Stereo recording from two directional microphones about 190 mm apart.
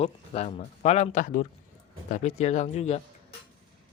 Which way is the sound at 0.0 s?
35° left (ahead or behind).